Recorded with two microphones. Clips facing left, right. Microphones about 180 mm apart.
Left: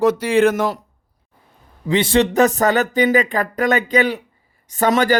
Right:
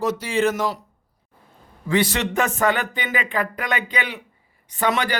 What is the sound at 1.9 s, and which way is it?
Speech, 25° left (ahead or behind).